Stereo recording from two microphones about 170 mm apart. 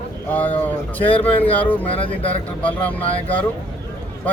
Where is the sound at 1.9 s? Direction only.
35° left (ahead or behind).